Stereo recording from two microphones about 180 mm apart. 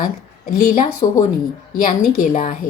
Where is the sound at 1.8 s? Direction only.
50° left (ahead or behind).